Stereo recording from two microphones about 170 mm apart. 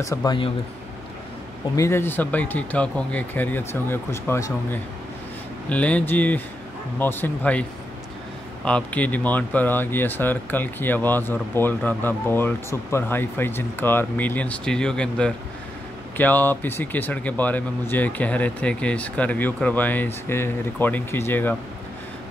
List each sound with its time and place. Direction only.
0.0 s speech: 20° left (ahead or behind)
1.8 s speech: 15° left (ahead or behind)
8.6 s speech: 5° left (ahead or behind)